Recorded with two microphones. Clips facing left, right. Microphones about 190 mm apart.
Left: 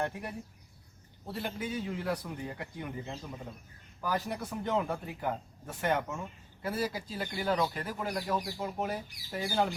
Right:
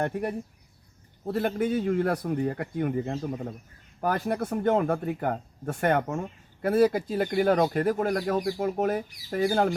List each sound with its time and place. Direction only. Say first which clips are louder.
0.0 s speech: right 7 dB; 55° right (ahead or behind)